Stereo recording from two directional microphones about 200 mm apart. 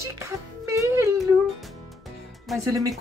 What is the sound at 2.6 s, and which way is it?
Speech, 15° right (ahead or behind).